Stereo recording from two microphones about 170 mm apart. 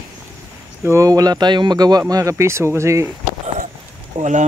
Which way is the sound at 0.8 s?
20° right (ahead or behind).